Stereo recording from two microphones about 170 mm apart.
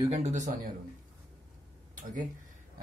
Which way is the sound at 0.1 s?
40° right (ahead or behind).